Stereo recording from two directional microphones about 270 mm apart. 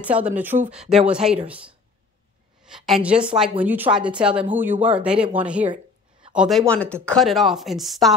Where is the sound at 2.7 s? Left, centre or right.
Centre.